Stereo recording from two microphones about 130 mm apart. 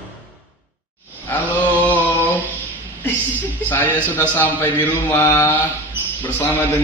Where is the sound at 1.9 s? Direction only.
15° left (ahead or behind).